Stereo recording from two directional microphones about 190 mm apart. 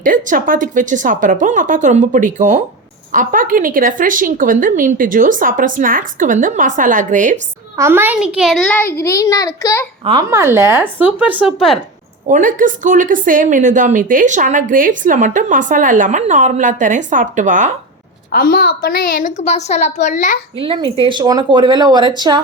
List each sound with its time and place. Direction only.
0.0 s speech: 45° right (ahead or behind)
7.8 s a child's voice: 10° right (ahead or behind); by 9.8 s 15° left (ahead or behind)
10.0 s speech: 25° right (ahead or behind)
10.2 s speech: 15° right (ahead or behind)
12.3 s speech: 45° right (ahead or behind)
18.3 s a woman's voice: 50° left (ahead or behind)
20.6 s speech: 25° right (ahead or behind)